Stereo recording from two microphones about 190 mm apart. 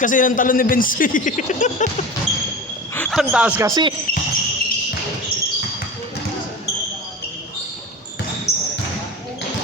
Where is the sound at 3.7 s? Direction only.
25° right (ahead or behind).